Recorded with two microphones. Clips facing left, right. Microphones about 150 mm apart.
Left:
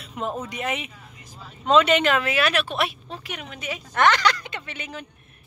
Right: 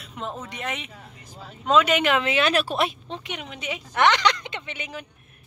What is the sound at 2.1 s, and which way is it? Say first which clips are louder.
Speech: right 1 dB; 20° right (ahead or behind).